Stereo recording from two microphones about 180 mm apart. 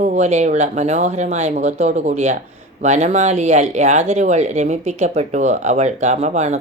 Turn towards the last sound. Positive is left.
turn(degrees=-40)  # may be behind; listen again after turning